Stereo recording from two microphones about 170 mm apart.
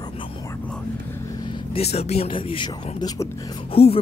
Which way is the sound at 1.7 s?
40° left (ahead or behind).